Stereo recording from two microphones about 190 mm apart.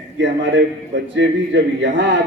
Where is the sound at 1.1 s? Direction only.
70° right (ahead or behind).